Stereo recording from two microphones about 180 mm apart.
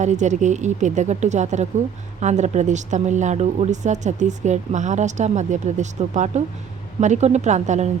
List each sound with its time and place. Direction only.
0.0 s speech: 40° right (ahead or behind)